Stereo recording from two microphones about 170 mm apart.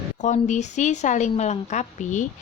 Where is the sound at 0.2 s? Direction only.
45° left (ahead or behind).